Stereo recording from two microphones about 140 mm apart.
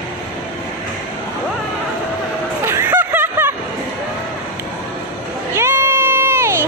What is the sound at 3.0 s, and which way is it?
Snicker, 15° right (ahead or behind).